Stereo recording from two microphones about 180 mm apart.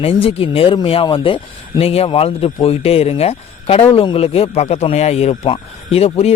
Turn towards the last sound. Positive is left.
turn(degrees=35)  # may be behind; listen again after turning